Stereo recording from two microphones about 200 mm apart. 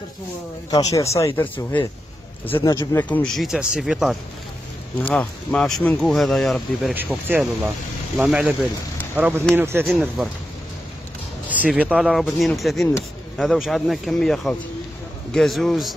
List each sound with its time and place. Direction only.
0.7 s speech: 20° left (ahead or behind); by 9.8 s 10° right (ahead or behind)
9.8 s speech: centre (ahead or behind)
11.7 s speech: 5° right (ahead or behind)